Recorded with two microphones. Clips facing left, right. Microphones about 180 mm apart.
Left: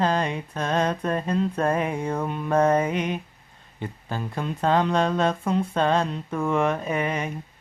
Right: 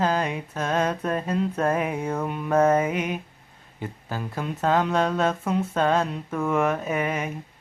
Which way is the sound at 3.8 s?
5° right (ahead or behind).